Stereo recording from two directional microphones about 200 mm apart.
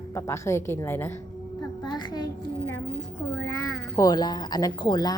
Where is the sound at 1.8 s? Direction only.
20° left (ahead or behind).